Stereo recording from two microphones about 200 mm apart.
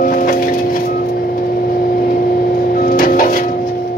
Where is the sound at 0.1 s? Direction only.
45° left (ahead or behind).